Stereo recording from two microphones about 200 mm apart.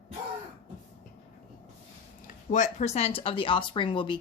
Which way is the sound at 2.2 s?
40° left (ahead or behind).